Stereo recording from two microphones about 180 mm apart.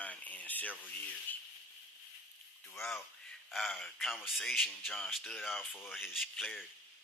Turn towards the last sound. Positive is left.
turn(degrees=0)  # may be behind; listen again after turning